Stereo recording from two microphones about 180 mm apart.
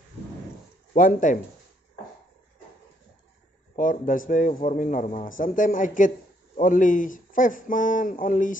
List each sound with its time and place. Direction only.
0.9 s a man's voice: 50° left (ahead or behind)
3.7 s a man's voice: 50° left (ahead or behind)